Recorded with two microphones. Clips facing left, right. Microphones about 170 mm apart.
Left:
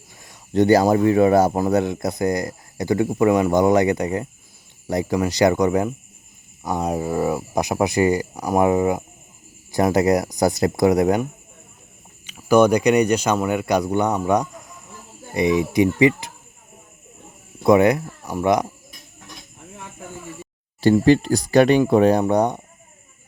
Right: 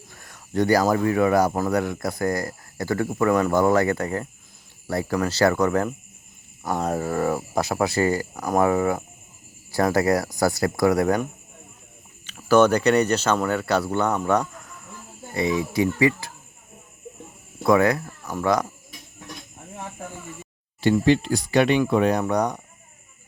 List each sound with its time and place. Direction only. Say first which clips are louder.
0.1 s speech: left 5 dB; 15° left (ahead or behind)
12.2 s speech: left 2 dB; 10° left (ahead or behind)
17.6 s speech: left 4 dB; 20° left (ahead or behind)
20.8 s speech: left 4 dB; 40° left (ahead or behind)